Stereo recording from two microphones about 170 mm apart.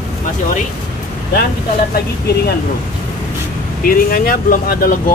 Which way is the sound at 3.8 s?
60° left (ahead or behind).